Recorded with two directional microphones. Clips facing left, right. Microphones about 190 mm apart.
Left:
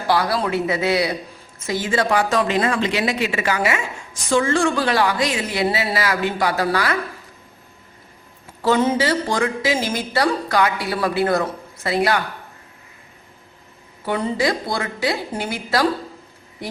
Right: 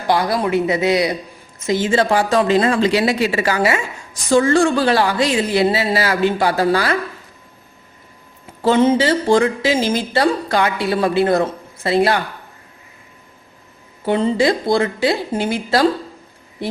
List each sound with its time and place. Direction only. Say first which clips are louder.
0.1 s speech: right 3 dB; 20° right (ahead or behind)
8.6 s speech: right 4 dB; 25° right (ahead or behind)
14.0 s a woman's voice: right 5 dB; 25° right (ahead or behind)